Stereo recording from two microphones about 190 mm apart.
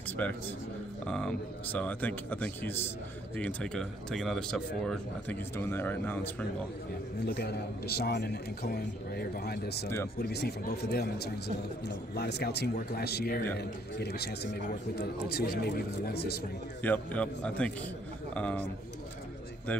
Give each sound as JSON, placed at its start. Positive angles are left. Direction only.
{"t": 0.2, "sound": "a man's voice", "side_deg": 10}
{"t": 7.2, "sound": "a man's voice", "side_deg": 55}
{"t": 16.8, "sound": "a man's voice", "side_deg": 10}
{"t": 19.7, "sound": "a man's voice", "side_deg": 5}